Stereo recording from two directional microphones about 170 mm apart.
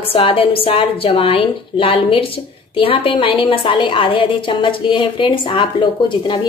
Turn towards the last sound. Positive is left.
turn(degrees=25)  # may be behind; listen again after turning